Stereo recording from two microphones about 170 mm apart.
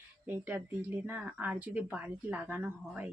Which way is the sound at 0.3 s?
10° right (ahead or behind).